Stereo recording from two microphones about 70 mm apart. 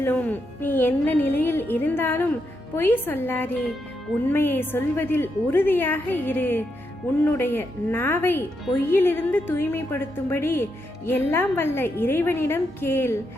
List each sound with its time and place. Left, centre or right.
0.0 s a woman's voice: left